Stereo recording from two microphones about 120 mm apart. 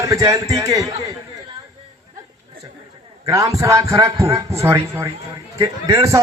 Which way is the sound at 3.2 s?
25° right (ahead or behind).